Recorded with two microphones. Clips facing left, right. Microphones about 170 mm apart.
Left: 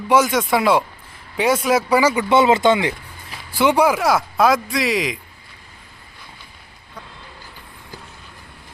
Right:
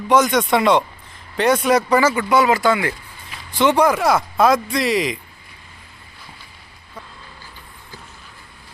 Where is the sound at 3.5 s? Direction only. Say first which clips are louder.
Even; 10° left (ahead or behind).